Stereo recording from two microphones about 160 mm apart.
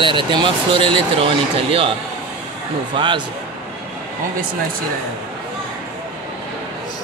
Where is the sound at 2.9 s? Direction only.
30° right (ahead or behind).